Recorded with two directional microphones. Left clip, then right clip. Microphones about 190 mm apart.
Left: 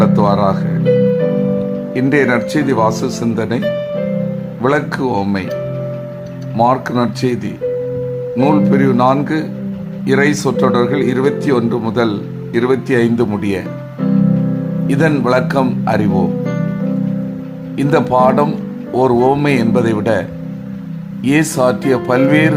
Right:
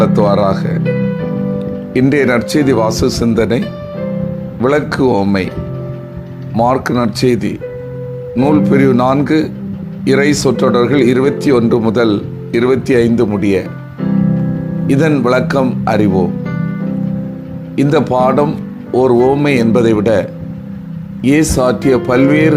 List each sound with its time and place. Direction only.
0.0 s speech: 20° right (ahead or behind)
1.9 s speech: 20° right (ahead or behind)
4.6 s speech: 20° right (ahead or behind)
6.6 s speech: 20° right (ahead or behind)
14.8 s speech: 10° right (ahead or behind)
17.7 s speech: 10° right (ahead or behind)
21.2 s speech: 15° right (ahead or behind)